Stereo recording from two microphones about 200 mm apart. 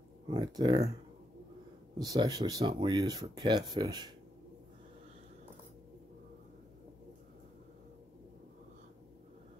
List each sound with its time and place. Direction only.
0.3 s speech: 20° right (ahead or behind)
2.0 s speech: 20° right (ahead or behind)